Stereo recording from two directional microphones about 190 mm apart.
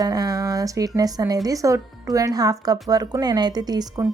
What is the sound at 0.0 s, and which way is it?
Speech, 20° right (ahead or behind).